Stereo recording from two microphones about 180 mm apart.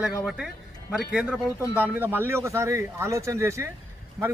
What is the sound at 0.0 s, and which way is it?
A man's voice, 5° right (ahead or behind).